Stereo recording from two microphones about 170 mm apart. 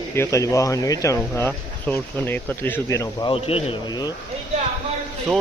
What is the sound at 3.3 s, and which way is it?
Speech, 35° left (ahead or behind).